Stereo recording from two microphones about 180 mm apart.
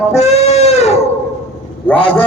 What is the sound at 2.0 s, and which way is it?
Speech, 30° left (ahead or behind).